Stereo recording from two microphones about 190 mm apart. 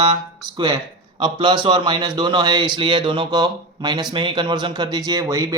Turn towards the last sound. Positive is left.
turn(degrees=-20)  # may be behind; listen again after turning